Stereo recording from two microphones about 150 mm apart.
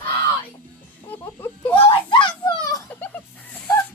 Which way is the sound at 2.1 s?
30° left (ahead or behind).